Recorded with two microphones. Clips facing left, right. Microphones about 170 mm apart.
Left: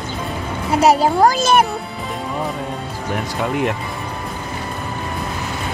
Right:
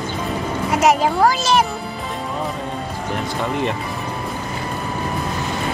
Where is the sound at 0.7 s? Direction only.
35° left (ahead or behind); by 1.6 s 50° left (ahead or behind).